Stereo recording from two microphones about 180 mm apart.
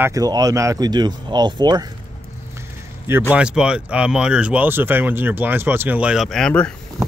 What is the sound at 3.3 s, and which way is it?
Speech, 5° right (ahead or behind).